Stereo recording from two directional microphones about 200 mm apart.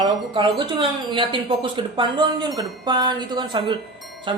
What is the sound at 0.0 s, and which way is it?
Speech, 25° right (ahead or behind).